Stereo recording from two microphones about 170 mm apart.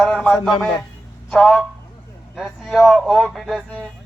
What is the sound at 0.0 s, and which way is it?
A man's voice, centre (ahead or behind).